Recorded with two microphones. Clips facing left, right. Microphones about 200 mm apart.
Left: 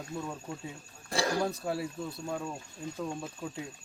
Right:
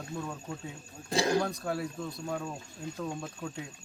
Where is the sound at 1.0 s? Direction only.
20° right (ahead or behind).